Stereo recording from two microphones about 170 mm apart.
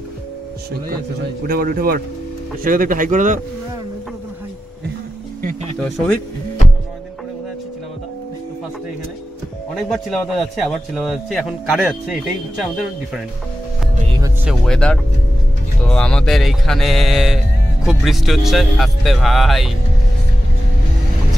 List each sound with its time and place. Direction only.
1.5 s speech: 60° right (ahead or behind)
5.8 s a man's voice: centre (ahead or behind)
9.8 s a man's voice: centre (ahead or behind)
14.6 s a man's voice: 5° left (ahead or behind)